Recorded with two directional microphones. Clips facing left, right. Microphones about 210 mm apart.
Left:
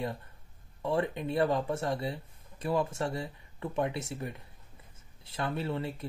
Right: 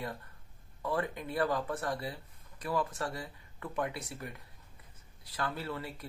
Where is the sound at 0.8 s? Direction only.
25° left (ahead or behind).